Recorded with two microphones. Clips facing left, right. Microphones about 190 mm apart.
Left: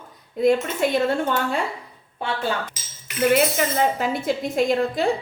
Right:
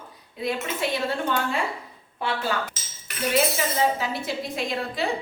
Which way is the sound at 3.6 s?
50° left (ahead or behind).